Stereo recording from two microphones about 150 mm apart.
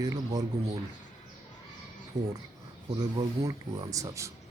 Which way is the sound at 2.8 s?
30° right (ahead or behind).